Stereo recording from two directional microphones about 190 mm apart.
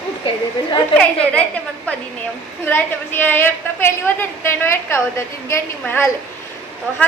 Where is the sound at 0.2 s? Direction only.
30° left (ahead or behind).